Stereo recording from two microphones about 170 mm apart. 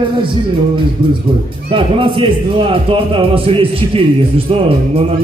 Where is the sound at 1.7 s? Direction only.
30° right (ahead or behind).